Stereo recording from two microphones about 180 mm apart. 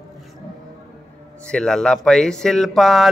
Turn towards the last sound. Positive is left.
turn(degrees=0)  # may be behind; listen again after turning